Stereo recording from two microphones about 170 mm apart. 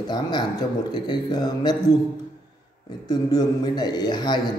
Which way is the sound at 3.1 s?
25° left (ahead or behind).